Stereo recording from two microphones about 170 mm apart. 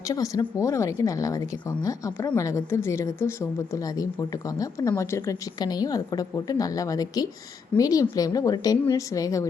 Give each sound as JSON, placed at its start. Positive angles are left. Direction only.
{"t": 0.1, "sound": "a woman's voice", "side_deg": 20}